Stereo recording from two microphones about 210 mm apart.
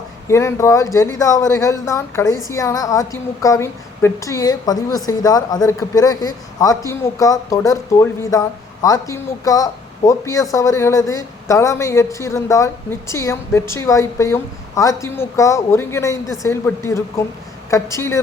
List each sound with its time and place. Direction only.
0.3 s a woman's voice: 15° left (ahead or behind)